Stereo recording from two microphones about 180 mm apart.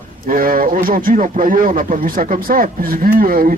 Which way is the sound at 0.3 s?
50° right (ahead or behind).